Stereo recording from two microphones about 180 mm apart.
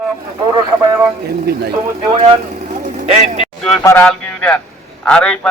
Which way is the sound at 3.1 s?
35° right (ahead or behind).